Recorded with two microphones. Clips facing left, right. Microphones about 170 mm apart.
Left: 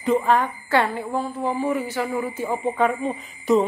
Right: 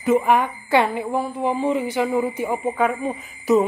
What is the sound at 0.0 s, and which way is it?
Speech, 10° right (ahead or behind).